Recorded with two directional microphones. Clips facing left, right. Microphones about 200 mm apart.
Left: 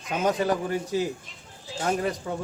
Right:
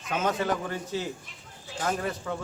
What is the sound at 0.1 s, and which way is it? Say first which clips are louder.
A man's voice: left 3 dB; 15° left (ahead or behind).